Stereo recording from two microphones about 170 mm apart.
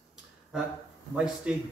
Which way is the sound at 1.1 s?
5° right (ahead or behind).